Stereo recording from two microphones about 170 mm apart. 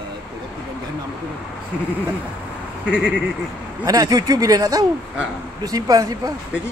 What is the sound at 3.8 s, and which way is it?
Speech, 20° right (ahead or behind).